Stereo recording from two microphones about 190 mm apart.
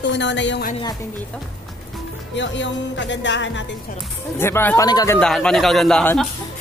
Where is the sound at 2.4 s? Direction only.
70° left (ahead or behind).